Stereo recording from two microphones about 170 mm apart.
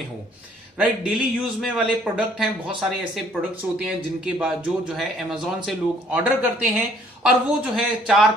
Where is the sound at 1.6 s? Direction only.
5° right (ahead or behind).